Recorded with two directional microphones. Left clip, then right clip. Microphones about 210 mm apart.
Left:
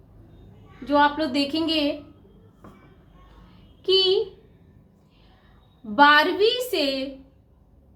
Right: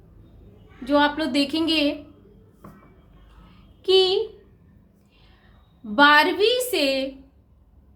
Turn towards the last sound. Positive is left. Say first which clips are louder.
# right 2 dB
turn(degrees=-20)  # may be behind; listen again after turning